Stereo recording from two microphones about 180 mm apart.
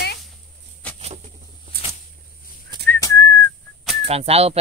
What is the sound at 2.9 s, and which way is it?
Whistling, 15° left (ahead or behind).